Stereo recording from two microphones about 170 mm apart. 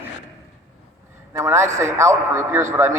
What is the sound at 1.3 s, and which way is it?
A man's voice, 15° right (ahead or behind).